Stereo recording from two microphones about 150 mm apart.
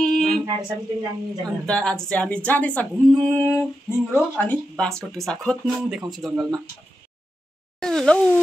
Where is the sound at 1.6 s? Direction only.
5° left (ahead or behind).